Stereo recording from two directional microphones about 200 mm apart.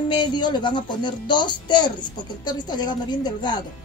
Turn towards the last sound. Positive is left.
turn(degrees=20)  # may be behind; listen again after turning